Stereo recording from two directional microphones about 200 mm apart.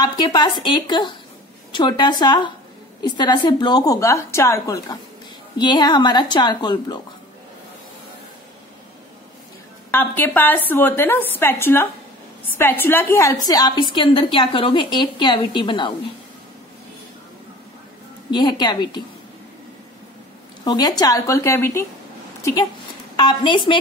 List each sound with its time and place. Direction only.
0.0 s a woman's voice: 20° left (ahead or behind)
9.8 s a woman's voice: 10° left (ahead or behind)
18.3 s a woman's voice: 20° left (ahead or behind)
20.6 s a woman's voice: 20° left (ahead or behind)